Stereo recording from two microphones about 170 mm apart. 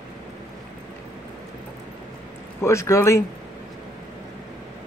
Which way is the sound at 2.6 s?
15° left (ahead or behind).